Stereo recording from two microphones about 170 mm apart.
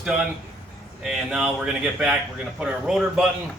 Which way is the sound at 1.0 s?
5° right (ahead or behind).